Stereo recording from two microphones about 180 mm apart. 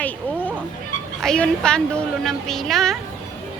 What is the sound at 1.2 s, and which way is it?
Speech, 5° left (ahead or behind).